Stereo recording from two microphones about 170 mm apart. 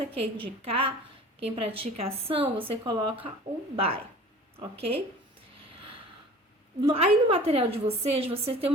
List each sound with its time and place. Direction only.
0.1 s a woman's voice: 30° right (ahead or behind)
6.8 s a woman's voice: 35° right (ahead or behind)